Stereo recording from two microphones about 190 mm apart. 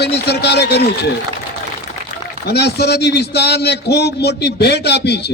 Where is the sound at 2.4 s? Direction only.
60° left (ahead or behind).